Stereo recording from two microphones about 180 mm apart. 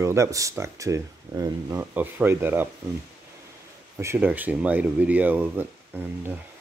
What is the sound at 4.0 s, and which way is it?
Speech, 15° right (ahead or behind).